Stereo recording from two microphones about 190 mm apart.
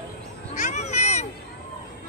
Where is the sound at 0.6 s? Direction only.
40° left (ahead or behind).